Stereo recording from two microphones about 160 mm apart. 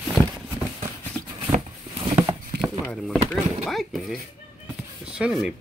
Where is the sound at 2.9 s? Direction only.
Centre (ahead or behind).